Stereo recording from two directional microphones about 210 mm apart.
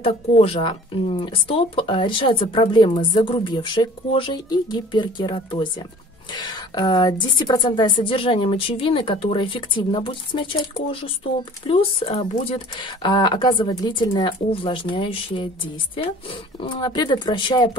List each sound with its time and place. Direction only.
0.0 s a woman's voice: 25° left (ahead or behind)